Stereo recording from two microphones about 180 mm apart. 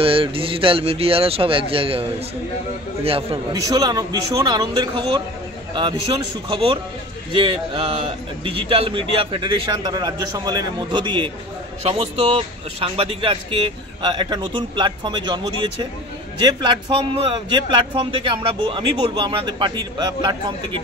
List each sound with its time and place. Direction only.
0.0 s speech: 30° right (ahead or behind)
3.6 s a man's voice: 20° right (ahead or behind)
6.5 s a man's voice: 30° right (ahead or behind)